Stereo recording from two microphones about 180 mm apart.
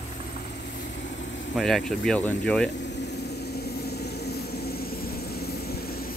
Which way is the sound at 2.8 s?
70° left (ahead or behind).